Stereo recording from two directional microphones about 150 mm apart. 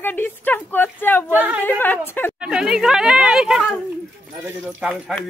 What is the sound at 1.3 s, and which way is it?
Speech, 10° right (ahead or behind).